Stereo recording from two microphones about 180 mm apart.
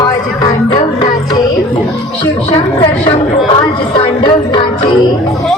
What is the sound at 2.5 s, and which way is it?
A woman's voice, 35° left (ahead or behind).